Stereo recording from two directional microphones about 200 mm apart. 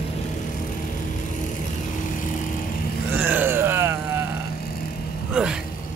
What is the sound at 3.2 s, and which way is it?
Vehicle, 10° right (ahead or behind).